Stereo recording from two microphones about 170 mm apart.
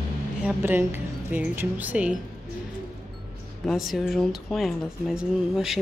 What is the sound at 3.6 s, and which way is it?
Speech, centre (ahead or behind).